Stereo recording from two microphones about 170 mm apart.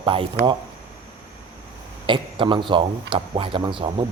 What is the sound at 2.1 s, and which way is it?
Speech, 30° right (ahead or behind).